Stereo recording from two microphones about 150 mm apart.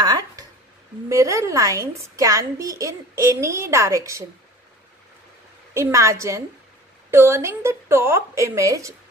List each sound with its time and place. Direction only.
0.0 s a sound: 25° right (ahead or behind)
1.0 s a woman's voice: 20° right (ahead or behind)
5.8 s a woman's voice: 20° right (ahead or behind)